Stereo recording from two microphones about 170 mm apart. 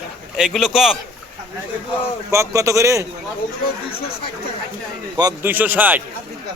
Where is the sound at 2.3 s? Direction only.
15° right (ahead or behind).